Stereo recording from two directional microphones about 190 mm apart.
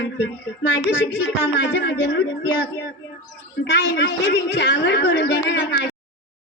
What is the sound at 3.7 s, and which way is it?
A man's voice, 65° left (ahead or behind).